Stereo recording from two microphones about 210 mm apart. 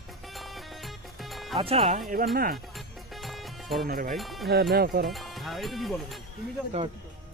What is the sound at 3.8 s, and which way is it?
Speech, 45° right (ahead or behind).